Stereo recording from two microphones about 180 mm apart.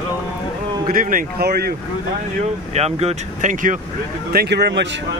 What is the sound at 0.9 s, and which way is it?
Speech, 50° right (ahead or behind).